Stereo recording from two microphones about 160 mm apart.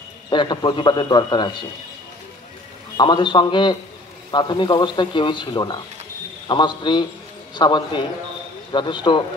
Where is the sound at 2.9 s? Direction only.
30° left (ahead or behind).